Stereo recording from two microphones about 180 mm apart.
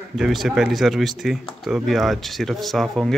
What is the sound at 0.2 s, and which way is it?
Speech, centre (ahead or behind).